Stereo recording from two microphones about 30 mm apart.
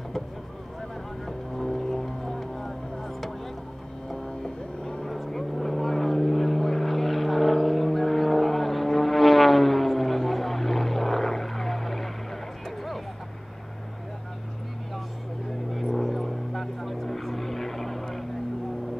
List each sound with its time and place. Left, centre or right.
1.2 s music: centre
4.1 s vehicle: left
5.0 s vehicle: centre
15.7 s vehicle: centre